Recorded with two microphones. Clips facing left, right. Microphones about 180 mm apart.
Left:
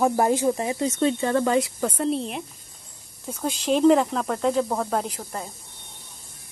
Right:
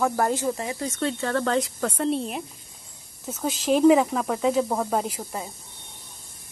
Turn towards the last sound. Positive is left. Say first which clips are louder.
# right 1 dB
turn(degrees=-10)  # may be behind; listen again after turning